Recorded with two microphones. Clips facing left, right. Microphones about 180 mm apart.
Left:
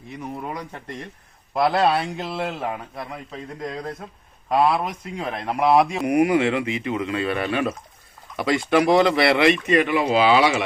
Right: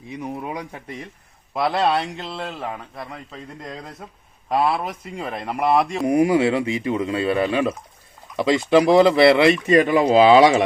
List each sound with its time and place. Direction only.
0.1 s speech: 10° right (ahead or behind)
6.1 s speech: 30° right (ahead or behind)